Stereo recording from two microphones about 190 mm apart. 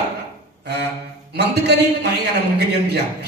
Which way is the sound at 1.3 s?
60° right (ahead or behind).